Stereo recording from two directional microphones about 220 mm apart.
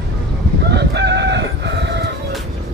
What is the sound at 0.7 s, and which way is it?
Chicken, 50° right (ahead or behind).